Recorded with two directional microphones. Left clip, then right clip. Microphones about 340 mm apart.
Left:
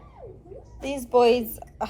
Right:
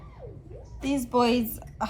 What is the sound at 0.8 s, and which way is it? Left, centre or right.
A woman's voice, centre.